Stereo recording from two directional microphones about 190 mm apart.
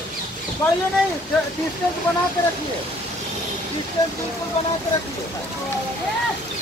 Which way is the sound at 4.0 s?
15° left (ahead or behind).